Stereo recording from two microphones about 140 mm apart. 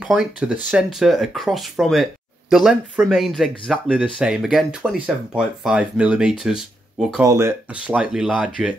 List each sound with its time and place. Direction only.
0.0 s speech: 5° right (ahead or behind)
7.2 s speech: 20° right (ahead or behind)
7.7 s speech: 10° right (ahead or behind)